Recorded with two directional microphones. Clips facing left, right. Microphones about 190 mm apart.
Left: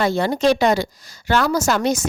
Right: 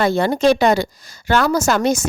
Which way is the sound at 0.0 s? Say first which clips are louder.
Right 2 dB; 55° right (ahead or behind).